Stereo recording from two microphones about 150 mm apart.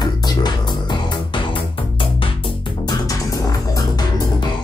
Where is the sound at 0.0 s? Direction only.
25° left (ahead or behind).